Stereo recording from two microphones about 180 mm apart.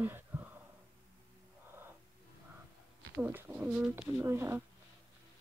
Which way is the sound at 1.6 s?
15° right (ahead or behind).